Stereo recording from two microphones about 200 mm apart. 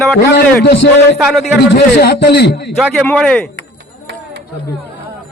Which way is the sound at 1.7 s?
55° left (ahead or behind).